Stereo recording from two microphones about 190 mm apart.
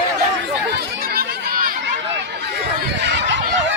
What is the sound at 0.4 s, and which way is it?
Chatter, 65° right (ahead or behind).